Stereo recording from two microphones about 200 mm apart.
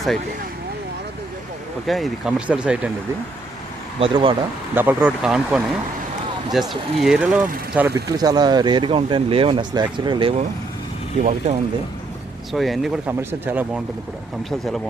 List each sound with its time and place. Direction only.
1.9 s speech: centre (ahead or behind)
4.0 s speech: 25° right (ahead or behind)
4.7 s speech: 10° right (ahead or behind); by 10.4 s 25° right (ahead or behind)
11.2 s speech: 40° right (ahead or behind)
12.5 s speech: centre (ahead or behind)